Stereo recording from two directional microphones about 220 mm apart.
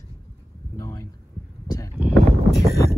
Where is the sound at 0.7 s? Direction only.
15° left (ahead or behind).